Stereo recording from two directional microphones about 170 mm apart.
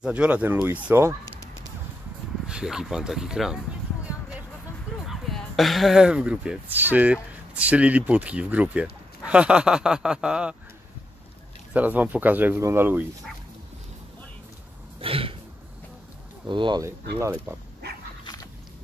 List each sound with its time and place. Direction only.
0.0 s speech: 5° right (ahead or behind)
2.4 s speech: 5° right (ahead or behind)
5.0 s speech: centre (ahead or behind)
11.7 s speech: 10° right (ahead or behind)
15.0 s a sound: 35° right (ahead or behind)
16.4 s speech: 30° right (ahead or behind)
17.2 s speech: 15° right (ahead or behind)
18.2 s biting: 20° left (ahead or behind)